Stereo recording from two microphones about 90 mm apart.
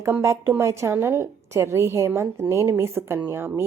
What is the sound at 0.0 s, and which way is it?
Speech, 30° right (ahead or behind).